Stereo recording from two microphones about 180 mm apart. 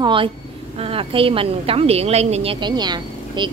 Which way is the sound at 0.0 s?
30° right (ahead or behind).